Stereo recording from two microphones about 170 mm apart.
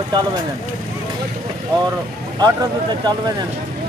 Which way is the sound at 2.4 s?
25° right (ahead or behind).